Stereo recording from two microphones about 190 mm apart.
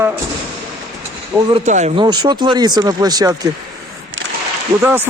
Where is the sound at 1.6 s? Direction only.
40° right (ahead or behind).